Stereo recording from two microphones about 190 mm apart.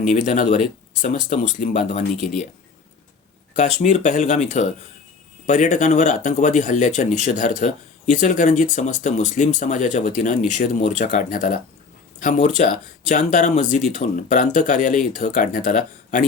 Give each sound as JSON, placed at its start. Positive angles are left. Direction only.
{"t": 0.0, "sound": "speech", "side_deg": 40}
{"t": 3.5, "sound": "speech", "side_deg": 40}